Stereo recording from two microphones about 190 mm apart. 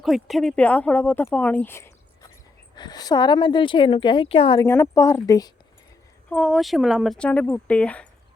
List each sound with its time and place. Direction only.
0.0 s a woman's voice: centre (ahead or behind); by 4.6 s 30° left (ahead or behind)
4.6 s speech: 15° left (ahead or behind)
6.3 s speech: centre (ahead or behind)